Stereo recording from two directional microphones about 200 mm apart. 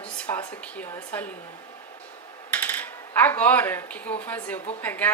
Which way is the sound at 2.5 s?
10° left (ahead or behind).